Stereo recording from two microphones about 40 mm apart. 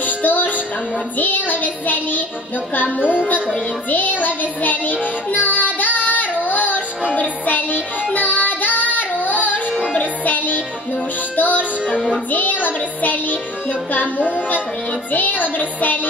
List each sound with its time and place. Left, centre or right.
0.0 s music: left
5.3 s child singing: left
7.1 s music: left